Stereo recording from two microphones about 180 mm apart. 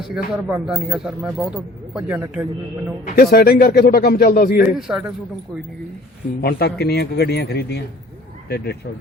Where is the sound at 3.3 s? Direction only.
55° left (ahead or behind).